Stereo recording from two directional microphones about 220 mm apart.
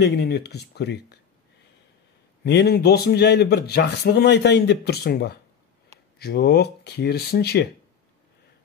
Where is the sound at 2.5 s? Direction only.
45° left (ahead or behind).